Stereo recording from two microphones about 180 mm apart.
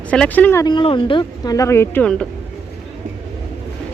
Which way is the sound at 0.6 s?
25° left (ahead or behind).